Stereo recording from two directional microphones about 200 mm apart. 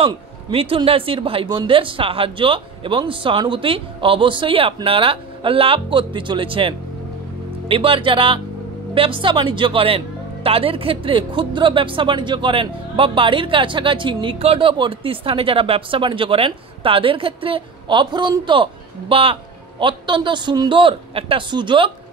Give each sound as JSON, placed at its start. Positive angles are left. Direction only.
{"t": 0.0, "sound": "speech", "side_deg": -30}